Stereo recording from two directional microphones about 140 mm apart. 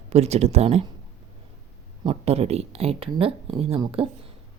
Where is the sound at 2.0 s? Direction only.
45° right (ahead or behind).